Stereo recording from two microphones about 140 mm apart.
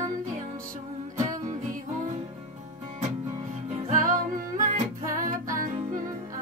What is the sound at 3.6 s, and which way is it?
Music, 60° right (ahead or behind).